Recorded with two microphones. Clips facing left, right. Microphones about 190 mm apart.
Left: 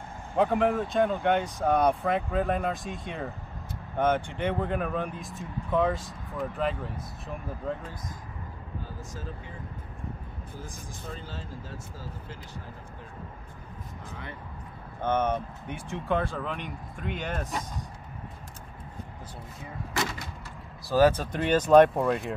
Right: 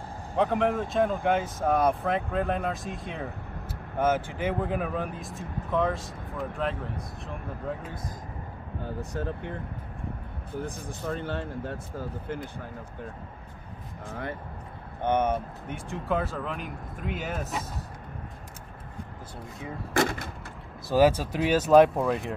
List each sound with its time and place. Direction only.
0.4 s speech: centre (ahead or behind)
8.8 s speech: 65° right (ahead or behind)
15.0 s speech: 15° right (ahead or behind)
19.9 s speech: 55° right (ahead or behind)
20.9 s speech: 10° right (ahead or behind)